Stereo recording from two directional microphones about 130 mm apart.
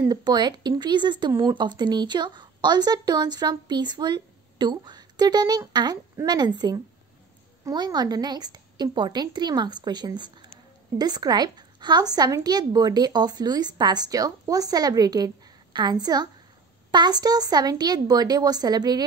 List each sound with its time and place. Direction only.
0.1 s speech: 35° right (ahead or behind)